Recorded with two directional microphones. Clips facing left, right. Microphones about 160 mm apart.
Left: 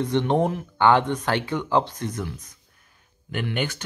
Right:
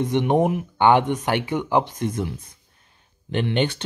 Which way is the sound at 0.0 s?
15° right (ahead or behind).